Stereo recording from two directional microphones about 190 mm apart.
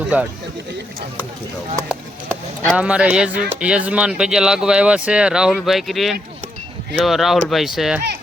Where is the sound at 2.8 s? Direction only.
5° right (ahead or behind).